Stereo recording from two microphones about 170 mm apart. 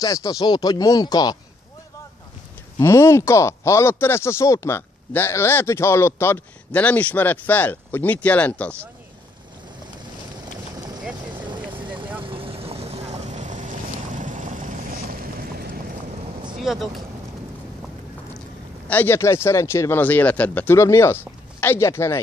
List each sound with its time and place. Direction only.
0.0 s speech: 20° left (ahead or behind)
2.8 s speech: 15° left (ahead or behind)
11.3 s vehicle: 25° right (ahead or behind); by 14.7 s 50° right (ahead or behind)
15.4 s vehicle: 65° right (ahead or behind)
16.5 s speech: centre (ahead or behind)
18.9 s speech: 10° left (ahead or behind)